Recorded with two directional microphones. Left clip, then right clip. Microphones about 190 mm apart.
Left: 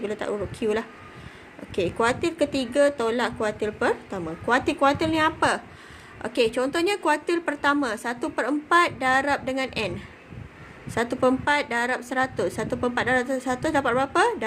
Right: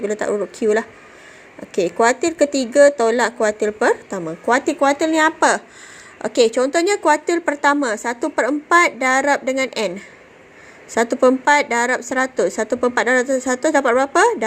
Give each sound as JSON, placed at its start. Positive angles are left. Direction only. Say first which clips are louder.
{"t": 0.0, "sound": "a woman's voice", "louder": "right 8 dB", "side_deg": -30}
{"t": 10.9, "sound": "a woman's voice", "louder": "right 8 dB", "side_deg": -30}